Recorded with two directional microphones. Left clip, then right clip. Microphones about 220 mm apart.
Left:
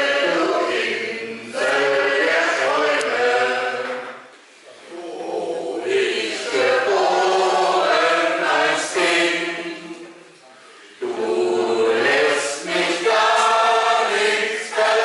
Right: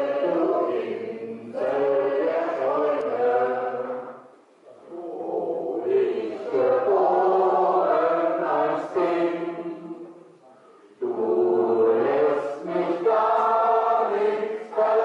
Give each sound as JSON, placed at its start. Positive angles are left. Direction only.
{"t": 0.0, "sound": "choir", "side_deg": -10}
{"t": 5.2, "sound": "a sound", "side_deg": -35}
{"t": 5.8, "sound": "chant", "side_deg": -5}
{"t": 11.1, "sound": "choir", "side_deg": -10}